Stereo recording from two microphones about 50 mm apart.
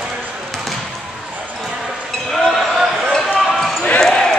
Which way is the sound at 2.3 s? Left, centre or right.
Centre.